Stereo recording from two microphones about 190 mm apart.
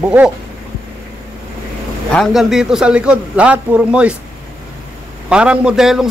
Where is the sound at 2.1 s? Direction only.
Centre (ahead or behind).